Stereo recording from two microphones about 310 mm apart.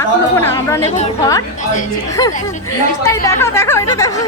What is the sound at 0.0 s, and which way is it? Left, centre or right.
Speech, centre.